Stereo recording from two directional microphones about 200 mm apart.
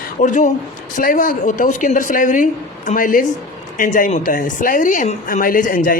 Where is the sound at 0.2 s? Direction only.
40° left (ahead or behind).